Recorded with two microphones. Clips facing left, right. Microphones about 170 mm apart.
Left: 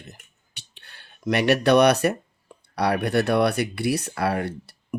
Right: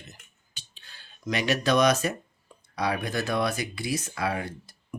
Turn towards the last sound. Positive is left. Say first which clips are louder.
# left 7 dB
turn(degrees=65)  # may be behind; listen again after turning